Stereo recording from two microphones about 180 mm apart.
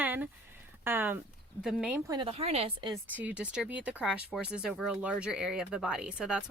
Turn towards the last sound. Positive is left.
turn(degrees=-5)  # may be behind; listen again after turning